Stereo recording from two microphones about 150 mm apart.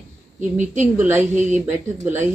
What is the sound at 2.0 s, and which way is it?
Speech, 50° right (ahead or behind).